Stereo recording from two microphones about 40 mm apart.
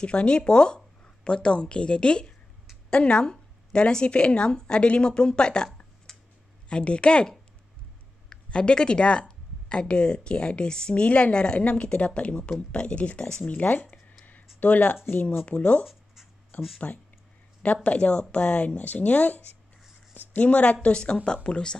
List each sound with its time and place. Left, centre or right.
0.0 s speech: left
6.1 s clicking: centre
6.7 s speech: left
11.1 s speech: left
11.3 s speech: left
15.4 s speech: left
17.8 s speech: left
20.8 s speech: left